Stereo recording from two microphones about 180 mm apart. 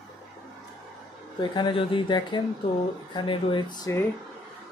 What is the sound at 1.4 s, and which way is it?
Speech, 25° left (ahead or behind).